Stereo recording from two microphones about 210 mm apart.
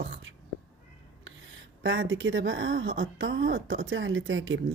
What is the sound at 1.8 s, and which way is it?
Speech, 65° right (ahead or behind).